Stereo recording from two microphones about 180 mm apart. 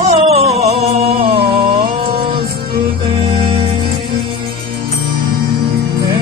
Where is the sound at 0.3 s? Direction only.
35° right (ahead or behind).